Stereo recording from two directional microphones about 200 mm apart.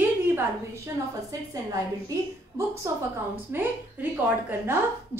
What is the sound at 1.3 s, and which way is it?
A woman's voice, 15° right (ahead or behind).